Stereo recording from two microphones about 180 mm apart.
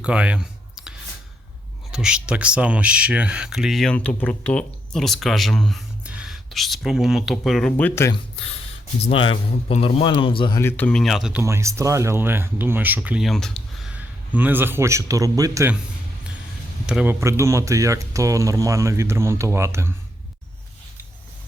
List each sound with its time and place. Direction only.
0.0 s clicking: 5° right (ahead or behind)
1.9 s speech: 5° right (ahead or behind); by 8.1 s 10° left (ahead or behind)
9.0 s speech: 30° left (ahead or behind)
10.6 s speech: 10° left (ahead or behind)
13.9 s a man's voice: 10° right (ahead or behind)
16.8 s speech: 5° right (ahead or behind)